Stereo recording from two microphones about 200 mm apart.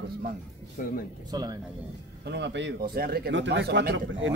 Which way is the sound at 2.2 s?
60° right (ahead or behind).